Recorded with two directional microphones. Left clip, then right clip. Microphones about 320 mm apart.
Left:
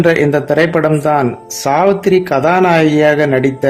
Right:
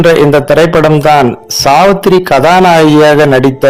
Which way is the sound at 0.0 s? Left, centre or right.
Centre.